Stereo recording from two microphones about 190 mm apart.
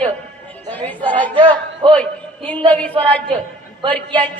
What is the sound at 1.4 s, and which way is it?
Speech, 25° right (ahead or behind).